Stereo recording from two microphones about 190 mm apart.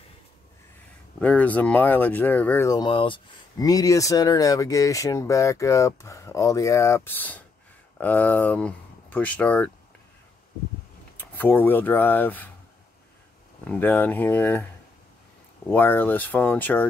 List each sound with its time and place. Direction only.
1.2 s speech: 5° left (ahead or behind)
11.1 s speech: 10° left (ahead or behind)
13.7 s speech: 10° left (ahead or behind)
15.7 s speech: 10° left (ahead or behind)